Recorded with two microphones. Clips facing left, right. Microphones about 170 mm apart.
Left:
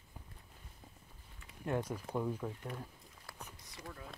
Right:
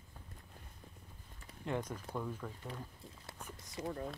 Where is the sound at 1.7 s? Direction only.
10° left (ahead or behind).